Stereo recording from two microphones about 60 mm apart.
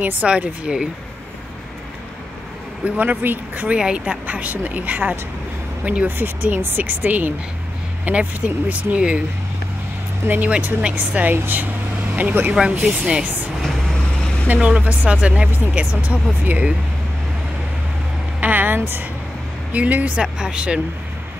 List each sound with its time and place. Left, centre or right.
0.0 s a woman's voice: right
2.8 s a woman's voice: right
10.2 s a woman's voice: right
12.5 s speech: centre
14.5 s a woman's voice: right
18.4 s vehicle: right
18.8 s speech: right
19.7 s a woman's voice: right